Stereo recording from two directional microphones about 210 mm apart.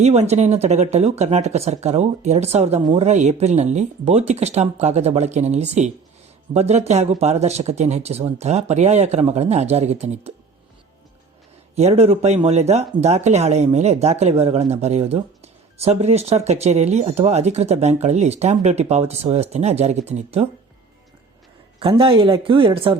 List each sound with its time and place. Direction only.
0.0 s speech: 30° right (ahead or behind)
11.7 s speech: 30° right (ahead or behind)
21.8 s speech: 25° right (ahead or behind)